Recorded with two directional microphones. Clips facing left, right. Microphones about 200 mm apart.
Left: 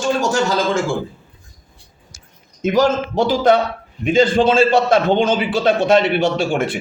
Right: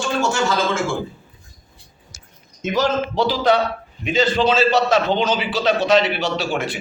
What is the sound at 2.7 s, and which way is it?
A man's voice, 50° left (ahead or behind).